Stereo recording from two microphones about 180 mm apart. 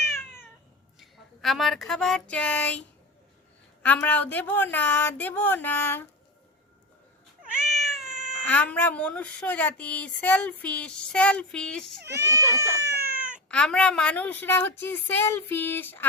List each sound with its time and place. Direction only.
0.0 s cat: 15° left (ahead or behind)
0.9 s a sound: centre (ahead or behind)
3.8 s speech: 10° left (ahead or behind)
7.6 s cat: centre (ahead or behind)
8.4 s speech: 10° left (ahead or behind)
12.0 s speech: 15° right (ahead or behind)
13.5 s speech: 5° left (ahead or behind)